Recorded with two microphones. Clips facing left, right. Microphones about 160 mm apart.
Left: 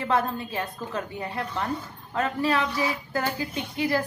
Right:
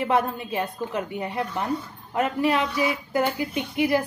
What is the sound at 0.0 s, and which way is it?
Speech, 20° right (ahead or behind).